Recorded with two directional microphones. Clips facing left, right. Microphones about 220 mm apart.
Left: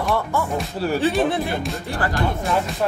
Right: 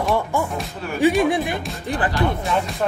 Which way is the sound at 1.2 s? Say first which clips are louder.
Right 1 dB; 15° right (ahead or behind).